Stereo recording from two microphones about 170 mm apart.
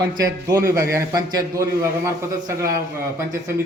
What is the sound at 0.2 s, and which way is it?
A man's voice, 20° right (ahead or behind).